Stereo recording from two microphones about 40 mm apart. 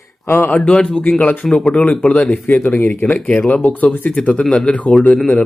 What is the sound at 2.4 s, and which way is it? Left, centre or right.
Speech, left.